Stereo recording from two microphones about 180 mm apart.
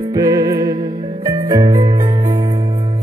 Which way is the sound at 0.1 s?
20° right (ahead or behind).